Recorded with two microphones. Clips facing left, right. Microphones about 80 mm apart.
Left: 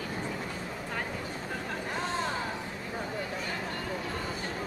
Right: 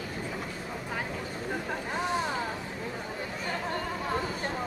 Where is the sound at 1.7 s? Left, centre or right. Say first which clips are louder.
Right 2 dB; centre.